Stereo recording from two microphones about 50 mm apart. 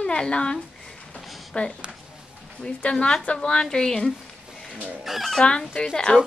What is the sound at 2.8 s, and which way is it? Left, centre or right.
A woman's voice, centre.